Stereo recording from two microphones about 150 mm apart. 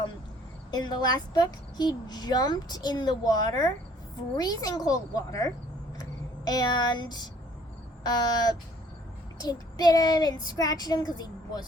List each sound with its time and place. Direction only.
0.7 s speech: 25° left (ahead or behind)
6.0 s a sound: 25° left (ahead or behind)
8.0 s speech: 25° left (ahead or behind)